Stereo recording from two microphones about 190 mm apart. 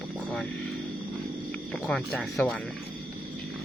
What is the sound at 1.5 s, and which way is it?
Speech, 5° left (ahead or behind).